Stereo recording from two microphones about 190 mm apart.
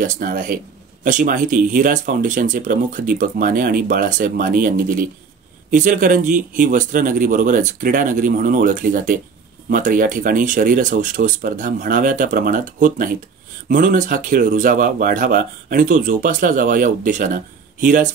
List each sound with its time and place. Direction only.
0.0 s speech: 45° right (ahead or behind)